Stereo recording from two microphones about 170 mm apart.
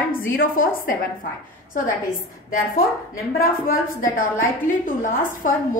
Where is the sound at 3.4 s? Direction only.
60° left (ahead or behind).